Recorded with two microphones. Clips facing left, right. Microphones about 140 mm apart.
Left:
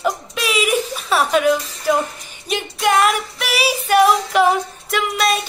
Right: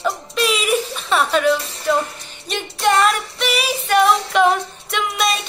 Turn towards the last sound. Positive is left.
turn(degrees=0)  # may be behind; listen again after turning